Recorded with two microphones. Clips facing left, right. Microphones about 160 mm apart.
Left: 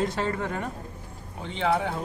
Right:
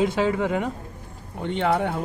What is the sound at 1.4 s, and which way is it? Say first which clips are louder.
Speech: right 3 dB; 60° right (ahead or behind).